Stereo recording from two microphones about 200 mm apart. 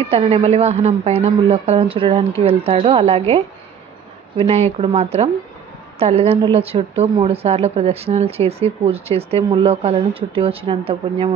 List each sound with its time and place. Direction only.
0.1 s a woman's voice: 30° right (ahead or behind)